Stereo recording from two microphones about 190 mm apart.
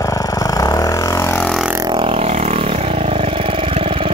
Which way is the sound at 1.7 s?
25° right (ahead or behind).